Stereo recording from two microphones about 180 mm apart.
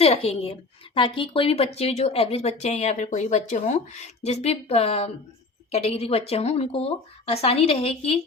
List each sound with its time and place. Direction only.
0.0 s speech: 30° left (ahead or behind)